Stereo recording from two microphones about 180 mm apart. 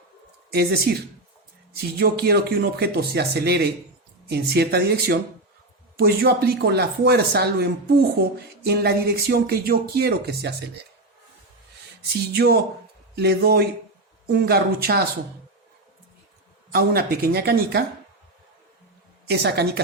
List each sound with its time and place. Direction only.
0.5 s speech: 60° right (ahead or behind)
12.3 s speech: 65° right (ahead or behind)
16.7 s speech: 55° right (ahead or behind)
19.3 s speech: 65° right (ahead or behind)